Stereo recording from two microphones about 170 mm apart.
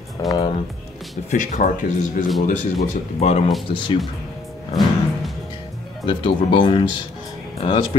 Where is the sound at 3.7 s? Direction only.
30° left (ahead or behind).